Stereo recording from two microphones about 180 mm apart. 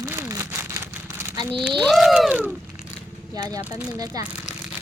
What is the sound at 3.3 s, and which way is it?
Speech, 20° right (ahead or behind).